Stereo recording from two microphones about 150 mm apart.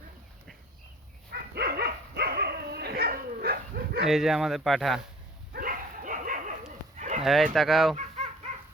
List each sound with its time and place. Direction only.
1.3 s dog: 90° right
4.1 s speech: centre (ahead or behind)
5.5 s bow-wow: 65° right (ahead or behind)
6.9 s a sound: 50° right (ahead or behind)
7.5 s speech: centre (ahead or behind)